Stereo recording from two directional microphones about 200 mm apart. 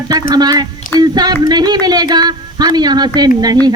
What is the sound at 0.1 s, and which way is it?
A woman's voice, 20° right (ahead or behind).